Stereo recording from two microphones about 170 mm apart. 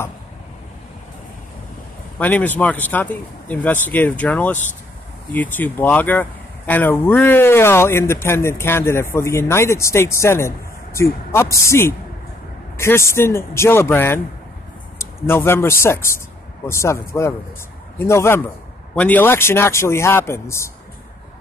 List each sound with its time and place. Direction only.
2.1 s speech: 10° left (ahead or behind)